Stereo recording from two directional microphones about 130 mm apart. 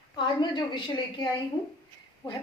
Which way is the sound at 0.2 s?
35° left (ahead or behind).